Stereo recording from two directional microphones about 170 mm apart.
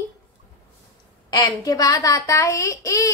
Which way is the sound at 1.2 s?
20° left (ahead or behind).